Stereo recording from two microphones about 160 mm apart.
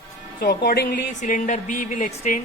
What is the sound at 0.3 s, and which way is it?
Speech, 65° left (ahead or behind).